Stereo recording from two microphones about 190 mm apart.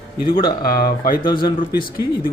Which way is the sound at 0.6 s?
50° left (ahead or behind).